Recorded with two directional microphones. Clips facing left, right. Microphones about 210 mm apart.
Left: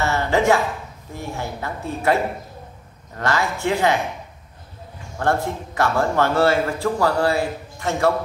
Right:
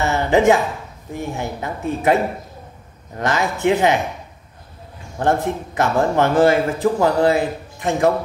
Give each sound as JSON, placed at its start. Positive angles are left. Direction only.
{"t": 0.0, "sound": "a woman's voice", "side_deg": -15}
{"t": 5.2, "sound": "a man's voice", "side_deg": -20}